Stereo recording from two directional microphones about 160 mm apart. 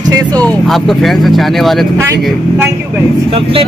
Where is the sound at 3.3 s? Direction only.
35° right (ahead or behind).